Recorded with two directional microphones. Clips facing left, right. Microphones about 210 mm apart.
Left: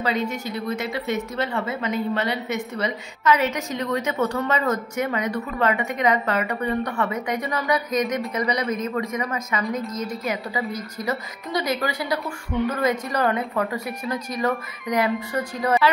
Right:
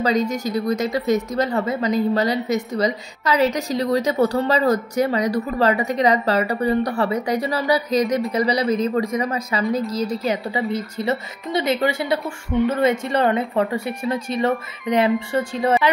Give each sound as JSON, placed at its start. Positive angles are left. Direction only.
{"t": 0.0, "sound": "a woman's voice", "side_deg": -40}